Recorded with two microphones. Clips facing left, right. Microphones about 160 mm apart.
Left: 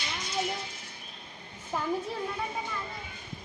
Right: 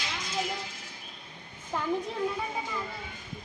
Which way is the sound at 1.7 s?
10° left (ahead or behind).